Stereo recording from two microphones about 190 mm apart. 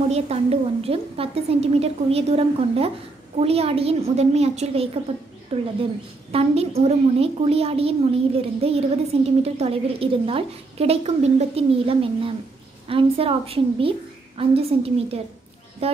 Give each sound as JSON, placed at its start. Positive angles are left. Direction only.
{"t": 0.1, "sound": "a woman's voice", "side_deg": -30}